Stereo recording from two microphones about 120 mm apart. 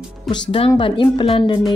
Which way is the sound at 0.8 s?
45° left (ahead or behind).